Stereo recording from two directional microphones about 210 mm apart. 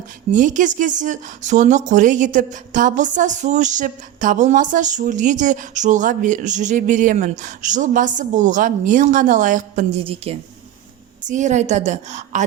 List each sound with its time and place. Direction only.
0.3 s speech: 35° right (ahead or behind)
10.0 s a woman's voice: 25° right (ahead or behind)